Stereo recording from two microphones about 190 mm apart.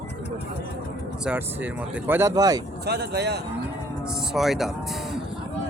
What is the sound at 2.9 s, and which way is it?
Speech, 60° right (ahead or behind).